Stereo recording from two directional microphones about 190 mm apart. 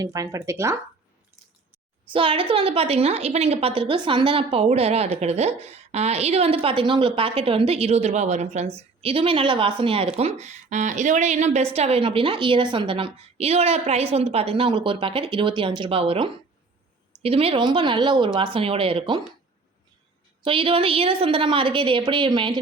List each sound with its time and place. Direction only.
0.0 s speech: 15° right (ahead or behind)
2.1 s a woman's voice: 30° right (ahead or behind)
20.4 s a woman's voice: 30° right (ahead or behind)